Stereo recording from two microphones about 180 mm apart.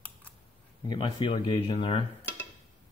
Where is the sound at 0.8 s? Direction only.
25° left (ahead or behind).